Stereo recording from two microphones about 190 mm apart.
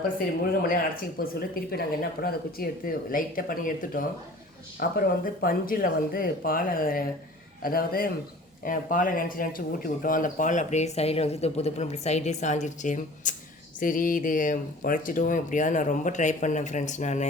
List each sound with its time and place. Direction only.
1.2 s speech: 50° left (ahead or behind)